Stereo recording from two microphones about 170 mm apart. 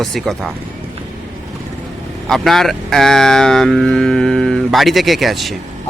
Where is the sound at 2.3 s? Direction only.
Centre (ahead or behind).